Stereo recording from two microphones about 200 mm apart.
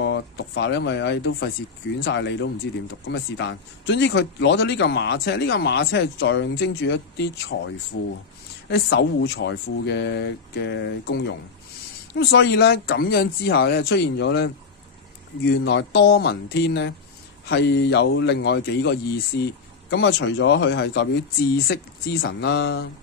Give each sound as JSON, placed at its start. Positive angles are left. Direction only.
{"t": 0.0, "sound": "a man's voice", "side_deg": 60}
{"t": 15.6, "sound": "a man's voice", "side_deg": 55}